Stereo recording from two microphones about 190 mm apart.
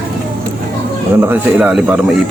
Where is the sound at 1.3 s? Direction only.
10° right (ahead or behind).